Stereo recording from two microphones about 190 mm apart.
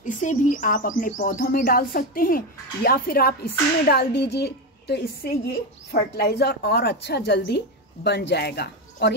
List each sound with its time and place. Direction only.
0.0 s speech: 40° left (ahead or behind); by 9.1 s 60° left (ahead or behind)